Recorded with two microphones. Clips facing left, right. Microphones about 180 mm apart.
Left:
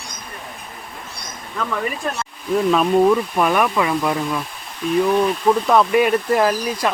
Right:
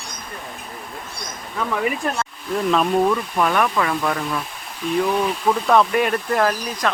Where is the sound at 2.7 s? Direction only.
5° left (ahead or behind).